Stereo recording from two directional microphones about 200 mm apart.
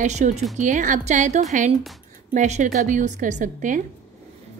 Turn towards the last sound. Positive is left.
turn(degrees=-40)  # may be behind; listen again after turning